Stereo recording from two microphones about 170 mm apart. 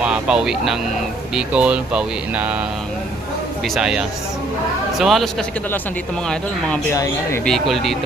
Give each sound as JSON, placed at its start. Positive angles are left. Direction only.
{"t": 0.0, "sound": "speech", "side_deg": -5}
{"t": 3.8, "sound": "a man's voice", "side_deg": -5}
{"t": 6.9, "sound": "speech", "side_deg": 20}
{"t": 7.4, "sound": "a man's voice", "side_deg": 0}